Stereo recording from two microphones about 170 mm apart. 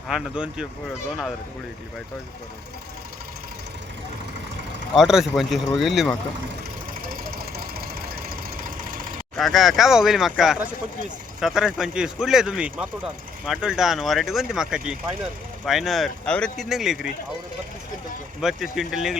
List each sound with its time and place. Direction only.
0.1 s speech: 5° right (ahead or behind)
4.9 s speech: centre (ahead or behind)
7.1 s engine knocking: 60° right (ahead or behind)
8.6 s vehicle: 55° right (ahead or behind)
9.3 s speech: centre (ahead or behind)
18.3 s speech: centre (ahead or behind)